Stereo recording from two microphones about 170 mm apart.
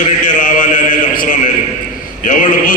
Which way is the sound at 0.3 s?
50° left (ahead or behind).